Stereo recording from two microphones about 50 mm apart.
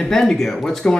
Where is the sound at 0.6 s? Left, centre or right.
Centre.